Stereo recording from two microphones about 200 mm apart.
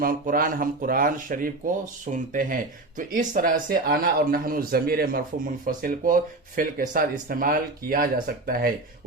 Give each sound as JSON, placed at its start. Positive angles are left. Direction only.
{"t": 0.0, "sound": "speech", "side_deg": -45}